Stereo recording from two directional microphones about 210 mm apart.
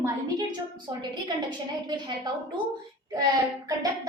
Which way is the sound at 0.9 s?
20° right (ahead or behind).